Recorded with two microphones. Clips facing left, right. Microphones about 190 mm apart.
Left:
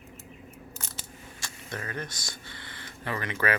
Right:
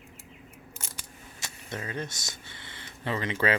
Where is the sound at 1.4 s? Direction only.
20° right (ahead or behind).